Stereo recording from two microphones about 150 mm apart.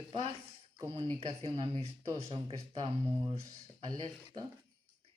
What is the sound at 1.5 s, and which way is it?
Speech, 40° right (ahead or behind).